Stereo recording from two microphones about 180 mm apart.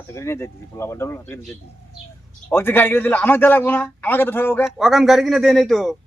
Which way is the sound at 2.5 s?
10° left (ahead or behind).